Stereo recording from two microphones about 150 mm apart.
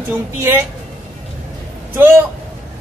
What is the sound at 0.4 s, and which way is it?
Speech, 15° right (ahead or behind).